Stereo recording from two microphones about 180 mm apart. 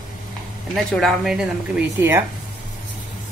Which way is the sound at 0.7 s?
Centre (ahead or behind).